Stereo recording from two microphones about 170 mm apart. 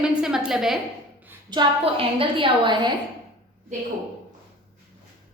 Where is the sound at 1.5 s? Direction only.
30° right (ahead or behind).